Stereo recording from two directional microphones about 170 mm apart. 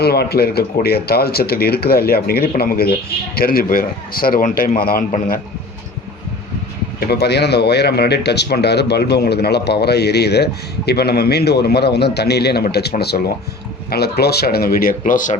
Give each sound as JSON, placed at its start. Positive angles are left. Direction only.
{"t": 0.0, "sound": "speech", "side_deg": 70}
{"t": 7.0, "sound": "speech", "side_deg": 70}